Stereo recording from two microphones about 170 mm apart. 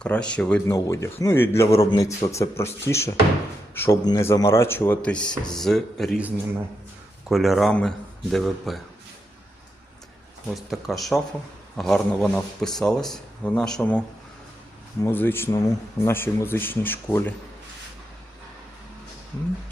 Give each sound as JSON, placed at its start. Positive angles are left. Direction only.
{"t": 0.0, "sound": "speech", "side_deg": 5}
{"t": 7.3, "sound": "speech", "side_deg": 0}
{"t": 10.5, "sound": "speech", "side_deg": 0}
{"t": 15.0, "sound": "speech", "side_deg": 10}